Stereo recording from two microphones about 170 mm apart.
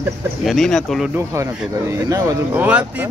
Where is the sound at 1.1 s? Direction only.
15° right (ahead or behind).